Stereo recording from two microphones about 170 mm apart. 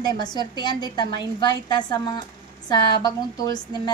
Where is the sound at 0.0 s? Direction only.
25° left (ahead or behind).